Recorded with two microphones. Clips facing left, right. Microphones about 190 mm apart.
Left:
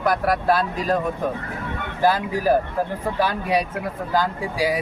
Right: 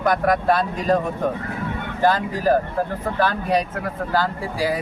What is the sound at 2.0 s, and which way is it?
Speech, 10° left (ahead or behind).